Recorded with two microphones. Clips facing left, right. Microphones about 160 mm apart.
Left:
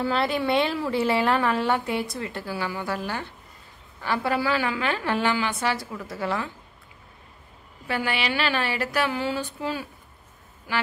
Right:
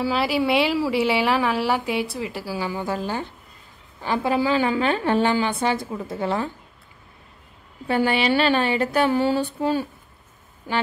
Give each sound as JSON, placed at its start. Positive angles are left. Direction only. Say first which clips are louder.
{"t": 0.0, "sound": "a woman's voice", "louder": "right 2 dB", "side_deg": -5}
{"t": 7.9, "sound": "speech", "louder": "right 7 dB", "side_deg": -30}